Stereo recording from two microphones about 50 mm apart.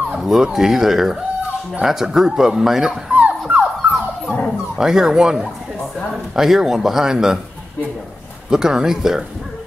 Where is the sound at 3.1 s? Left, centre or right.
Right.